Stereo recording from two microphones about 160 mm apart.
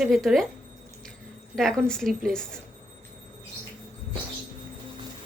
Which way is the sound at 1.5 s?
5° left (ahead or behind).